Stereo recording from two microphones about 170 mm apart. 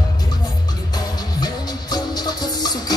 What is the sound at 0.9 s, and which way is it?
Music, 25° left (ahead or behind).